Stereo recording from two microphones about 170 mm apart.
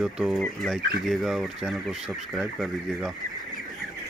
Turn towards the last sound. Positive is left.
turn(degrees=0)  # may be behind; listen again after turning